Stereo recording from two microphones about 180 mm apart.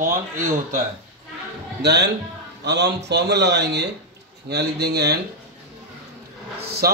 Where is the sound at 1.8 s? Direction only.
70° right (ahead or behind).